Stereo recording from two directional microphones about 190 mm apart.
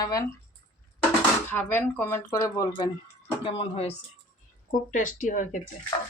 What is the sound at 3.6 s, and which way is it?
Speech, 30° left (ahead or behind).